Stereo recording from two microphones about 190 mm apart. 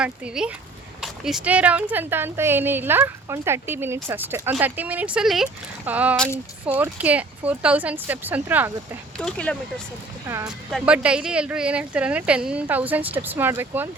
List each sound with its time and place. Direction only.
0.0 s speech: 5° right (ahead or behind)
9.1 s speech: 5° left (ahead or behind)
10.2 s speech: 15° right (ahead or behind)
10.7 s speech: 5° right (ahead or behind)